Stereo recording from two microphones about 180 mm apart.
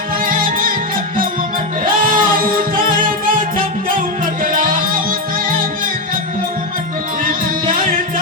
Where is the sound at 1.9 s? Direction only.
50° right (ahead or behind).